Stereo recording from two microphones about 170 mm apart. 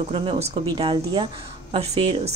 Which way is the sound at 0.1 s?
35° right (ahead or behind).